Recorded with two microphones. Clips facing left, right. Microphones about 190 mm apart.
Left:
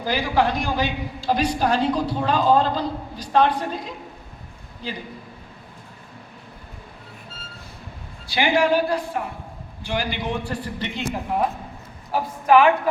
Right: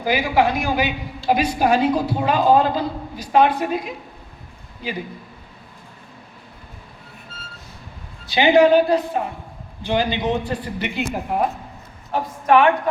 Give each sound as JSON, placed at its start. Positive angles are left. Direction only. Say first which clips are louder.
{"t": 0.0, "sound": "a woman's voice", "louder": "right 3 dB", "side_deg": -10}
{"t": 8.3, "sound": "a woman's voice", "louder": "right 6 dB", "side_deg": -20}
{"t": 12.1, "sound": "a woman's voice", "louder": "even", "side_deg": 0}